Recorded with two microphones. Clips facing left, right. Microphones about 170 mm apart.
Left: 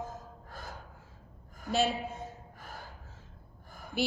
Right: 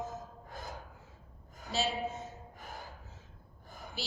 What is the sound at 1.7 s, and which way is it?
Speech, 55° left (ahead or behind).